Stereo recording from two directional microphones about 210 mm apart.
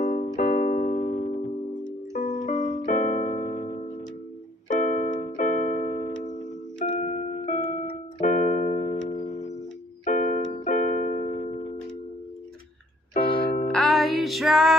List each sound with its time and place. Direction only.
0.0 s keyboard: 35° left (ahead or behind)
0.4 s music: 40° left (ahead or behind)
2.4 s music: 40° left (ahead or behind)
4.6 s music: 35° left (ahead or behind)
7.0 s keyboard: 35° left (ahead or behind)
13.4 s music: 45° left (ahead or behind)
13.7 s music: centre (ahead or behind)